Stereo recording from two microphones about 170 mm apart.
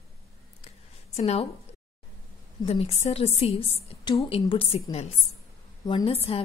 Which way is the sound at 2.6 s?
35° left (ahead or behind).